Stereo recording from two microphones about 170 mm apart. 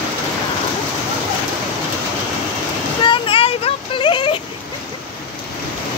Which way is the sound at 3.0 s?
30° left (ahead or behind).